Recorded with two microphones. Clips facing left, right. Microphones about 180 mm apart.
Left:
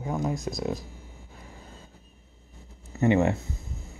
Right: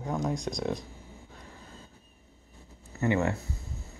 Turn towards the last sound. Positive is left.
turn(degrees=20)  # may be behind; listen again after turning